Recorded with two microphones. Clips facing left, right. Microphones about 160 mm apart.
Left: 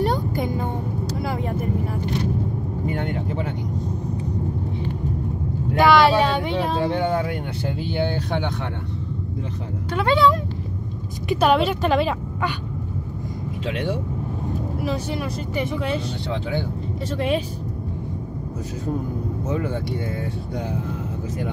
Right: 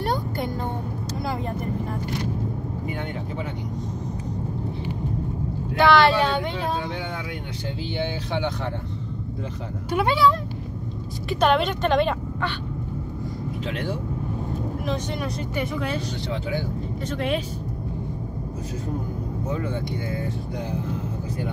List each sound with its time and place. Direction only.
5.8 s vehicle: 10° left (ahead or behind)
6.9 s speech: 50° left (ahead or behind)
9.9 s speech: 10° right (ahead or behind)
11.3 s speech: 5° left (ahead or behind)